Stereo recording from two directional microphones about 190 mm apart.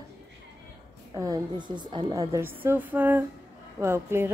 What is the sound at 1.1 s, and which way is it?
A woman's voice, 20° right (ahead or behind).